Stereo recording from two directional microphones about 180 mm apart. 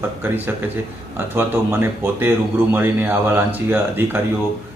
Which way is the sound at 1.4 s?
15° right (ahead or behind).